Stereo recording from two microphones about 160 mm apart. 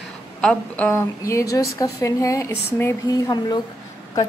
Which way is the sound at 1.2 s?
20° left (ahead or behind).